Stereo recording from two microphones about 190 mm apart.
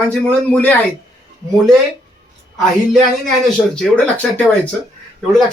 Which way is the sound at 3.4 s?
5° left (ahead or behind).